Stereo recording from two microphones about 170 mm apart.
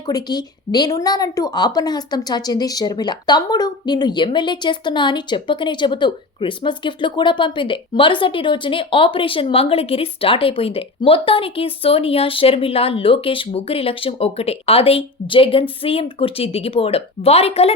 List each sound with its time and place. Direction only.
0.0 s speech: 25° left (ahead or behind)